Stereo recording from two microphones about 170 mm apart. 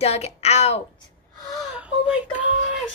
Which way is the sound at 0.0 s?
40° left (ahead or behind).